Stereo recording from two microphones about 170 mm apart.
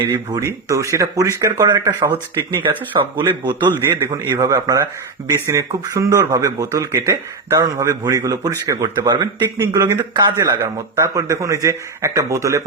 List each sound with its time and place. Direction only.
0.3 s speech: 20° right (ahead or behind)
3.7 s a man's voice: 15° right (ahead or behind)